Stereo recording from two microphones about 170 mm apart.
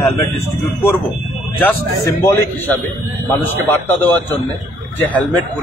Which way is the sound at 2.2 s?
15° left (ahead or behind).